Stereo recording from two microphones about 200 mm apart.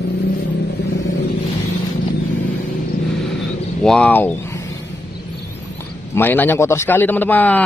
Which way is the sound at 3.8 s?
5° left (ahead or behind).